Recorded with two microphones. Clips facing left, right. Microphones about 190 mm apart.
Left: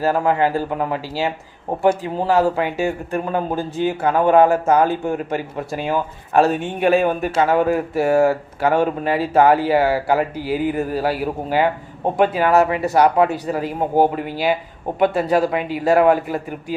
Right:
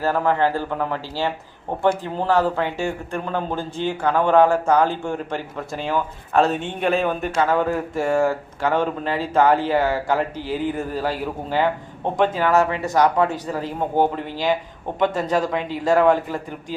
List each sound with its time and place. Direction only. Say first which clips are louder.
0.0 s speech: left 2 dB; 15° left (ahead or behind)